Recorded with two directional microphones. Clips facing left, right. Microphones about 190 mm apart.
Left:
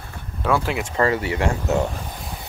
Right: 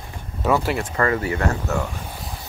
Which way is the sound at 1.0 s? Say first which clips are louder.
Left 2 dB; 25° left (ahead or behind).